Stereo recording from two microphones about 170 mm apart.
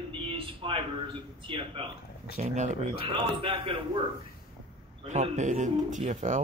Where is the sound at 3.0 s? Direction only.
30° right (ahead or behind).